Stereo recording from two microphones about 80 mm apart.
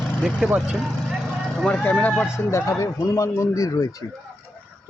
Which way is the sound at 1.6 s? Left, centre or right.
Centre.